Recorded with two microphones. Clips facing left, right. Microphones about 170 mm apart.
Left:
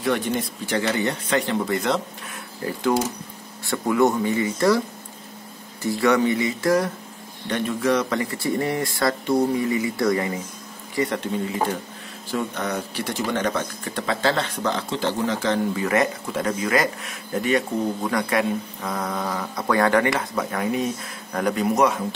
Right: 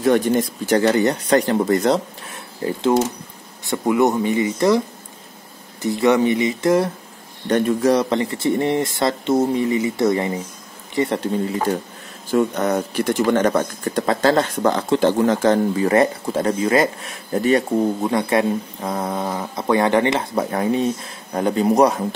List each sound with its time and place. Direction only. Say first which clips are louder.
0.0 s speech: right 7 dB; 45° right (ahead or behind)
2.6 s speech: right 4 dB; 25° right (ahead or behind)
7.4 s speech: right 6 dB; 45° right (ahead or behind); by 10.3 s 25° right (ahead or behind)
12.3 s speech: right 8 dB; 45° right (ahead or behind)